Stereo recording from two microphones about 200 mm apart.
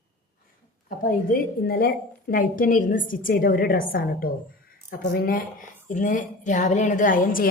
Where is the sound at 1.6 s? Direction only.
50° left (ahead or behind).